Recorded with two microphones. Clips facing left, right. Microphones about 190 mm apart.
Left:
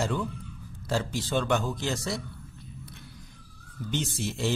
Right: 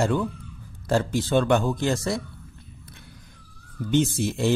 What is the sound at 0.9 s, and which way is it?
Speech, 55° right (ahead or behind).